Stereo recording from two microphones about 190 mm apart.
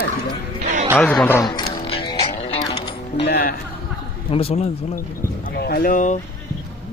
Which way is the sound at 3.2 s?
55° left (ahead or behind).